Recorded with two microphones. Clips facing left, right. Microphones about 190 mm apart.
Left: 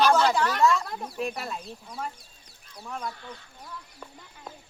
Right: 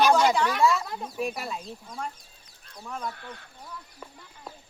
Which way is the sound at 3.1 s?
60° right (ahead or behind).